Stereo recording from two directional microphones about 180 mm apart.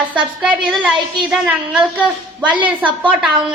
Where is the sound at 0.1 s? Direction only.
5° right (ahead or behind).